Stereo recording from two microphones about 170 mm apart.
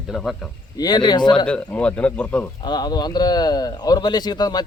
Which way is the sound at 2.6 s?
25° left (ahead or behind).